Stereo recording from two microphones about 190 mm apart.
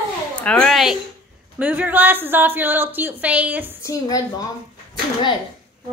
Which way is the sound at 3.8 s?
15° left (ahead or behind).